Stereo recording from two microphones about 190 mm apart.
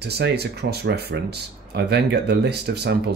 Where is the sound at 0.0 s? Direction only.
60° right (ahead or behind).